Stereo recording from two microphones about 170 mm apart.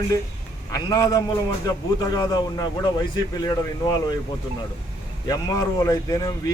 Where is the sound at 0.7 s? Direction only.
20° left (ahead or behind).